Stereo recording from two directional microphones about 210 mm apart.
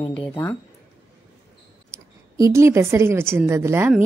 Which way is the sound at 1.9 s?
15° right (ahead or behind).